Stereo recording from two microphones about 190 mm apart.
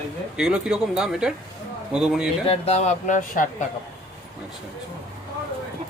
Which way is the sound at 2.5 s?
35° left (ahead or behind).